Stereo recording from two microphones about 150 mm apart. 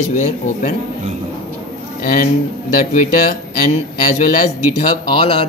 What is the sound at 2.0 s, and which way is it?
A man's voice, 70° left (ahead or behind).